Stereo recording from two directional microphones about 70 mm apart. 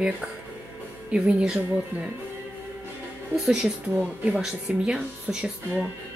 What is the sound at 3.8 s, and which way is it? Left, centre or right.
Speech, centre.